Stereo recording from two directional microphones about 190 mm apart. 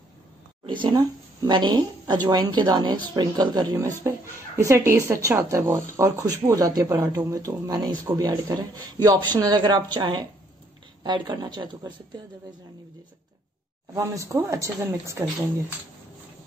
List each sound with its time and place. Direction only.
0.7 s a woman's voice: 25° right (ahead or behind)
13.9 s speech: 15° right (ahead or behind)